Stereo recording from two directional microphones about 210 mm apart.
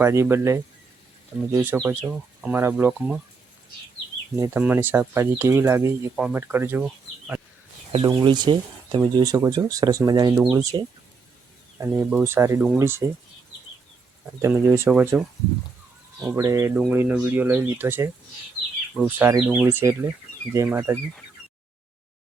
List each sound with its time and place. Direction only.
0.0 s speech: 10° right (ahead or behind)
4.4 s speech: 10° right (ahead or behind)
7.9 s speech: 20° right (ahead or behind)
14.4 s speech: 10° right (ahead or behind)
16.3 s speech: 15° right (ahead or behind)